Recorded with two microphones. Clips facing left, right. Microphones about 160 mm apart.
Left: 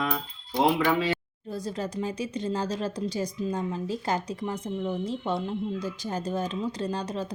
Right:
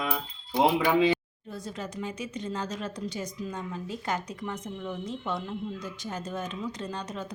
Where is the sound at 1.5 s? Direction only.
35° left (ahead or behind).